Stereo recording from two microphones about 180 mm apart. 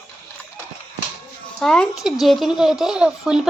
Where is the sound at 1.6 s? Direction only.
Centre (ahead or behind).